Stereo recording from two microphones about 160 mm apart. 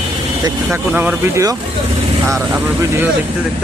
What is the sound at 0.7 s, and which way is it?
Speech, 10° right (ahead or behind).